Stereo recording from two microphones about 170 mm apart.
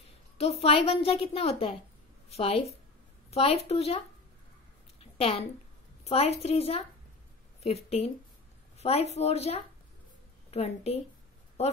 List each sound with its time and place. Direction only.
0.4 s a woman's voice: 35° left (ahead or behind)
6.0 s a woman's voice: 35° left (ahead or behind)